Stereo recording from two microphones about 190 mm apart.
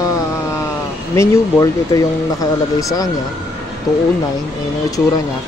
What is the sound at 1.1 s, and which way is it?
Speech, 15° left (ahead or behind).